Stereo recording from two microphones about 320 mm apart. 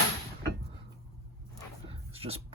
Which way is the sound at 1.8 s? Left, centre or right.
Centre.